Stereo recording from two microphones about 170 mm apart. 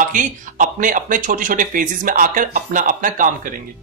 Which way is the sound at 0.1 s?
50° right (ahead or behind).